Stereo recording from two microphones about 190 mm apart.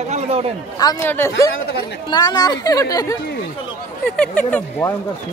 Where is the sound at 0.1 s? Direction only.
35° right (ahead or behind).